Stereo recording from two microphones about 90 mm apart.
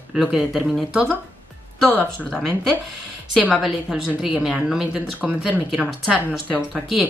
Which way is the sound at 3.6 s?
5° right (ahead or behind).